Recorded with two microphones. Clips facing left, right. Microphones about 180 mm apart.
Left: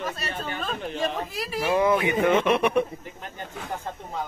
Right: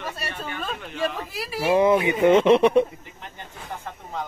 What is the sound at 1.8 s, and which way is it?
Speech, 20° right (ahead or behind).